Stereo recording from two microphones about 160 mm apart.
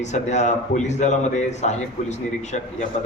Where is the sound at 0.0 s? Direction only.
45° left (ahead or behind).